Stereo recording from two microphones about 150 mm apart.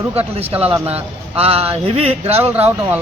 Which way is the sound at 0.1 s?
40° right (ahead or behind).